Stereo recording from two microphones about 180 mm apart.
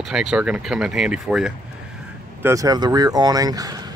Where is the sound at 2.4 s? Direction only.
20° right (ahead or behind).